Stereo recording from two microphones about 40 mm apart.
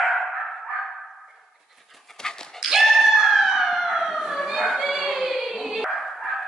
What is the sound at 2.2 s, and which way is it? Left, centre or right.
Dog, centre.